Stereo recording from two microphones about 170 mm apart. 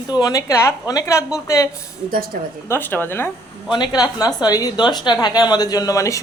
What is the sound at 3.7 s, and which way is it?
A woman's voice, 25° left (ahead or behind).